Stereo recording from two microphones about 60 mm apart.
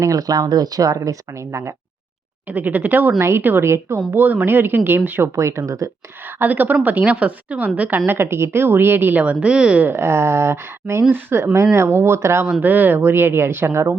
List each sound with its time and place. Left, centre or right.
0.0 s speech: right
2.5 s a woman's voice: right
3.2 s speech: right
4.1 s a woman's voice: right
5.2 s speech: right
6.2 s a woman's voice: right
9.2 s a woman's voice: centre
9.8 s a woman's voice: right
11.5 s speech: right
12.6 s a woman's voice: right